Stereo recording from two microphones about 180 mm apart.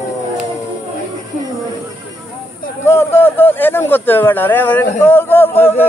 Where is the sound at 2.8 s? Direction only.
15° left (ahead or behind).